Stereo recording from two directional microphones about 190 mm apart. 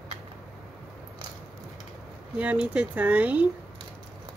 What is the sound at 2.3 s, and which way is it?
Speech, 5° right (ahead or behind).